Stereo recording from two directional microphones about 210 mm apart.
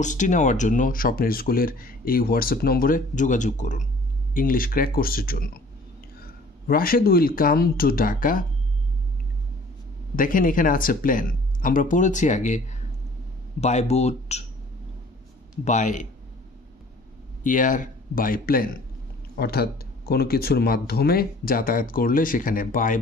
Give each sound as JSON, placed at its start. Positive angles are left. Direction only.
{"t": 0.0, "sound": "speech", "side_deg": 35}
{"t": 6.7, "sound": "speech", "side_deg": 45}
{"t": 10.1, "sound": "speech", "side_deg": 40}
{"t": 15.6, "sound": "speech", "side_deg": 35}
{"t": 17.4, "sound": "speech", "side_deg": 40}